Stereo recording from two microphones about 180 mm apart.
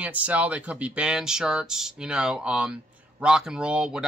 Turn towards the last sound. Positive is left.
turn(degrees=-5)  # may be behind; listen again after turning